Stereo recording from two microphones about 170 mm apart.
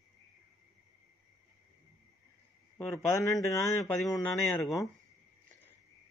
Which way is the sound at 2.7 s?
15° left (ahead or behind).